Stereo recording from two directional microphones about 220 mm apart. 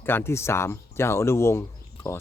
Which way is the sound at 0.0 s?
10° left (ahead or behind).